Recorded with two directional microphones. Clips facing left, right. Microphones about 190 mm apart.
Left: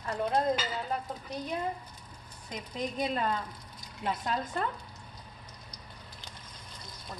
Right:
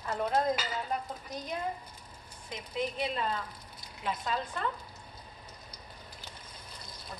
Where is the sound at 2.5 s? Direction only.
45° left (ahead or behind).